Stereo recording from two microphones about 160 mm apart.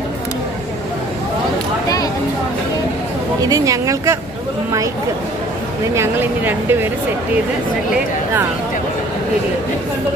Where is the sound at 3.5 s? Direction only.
20° right (ahead or behind).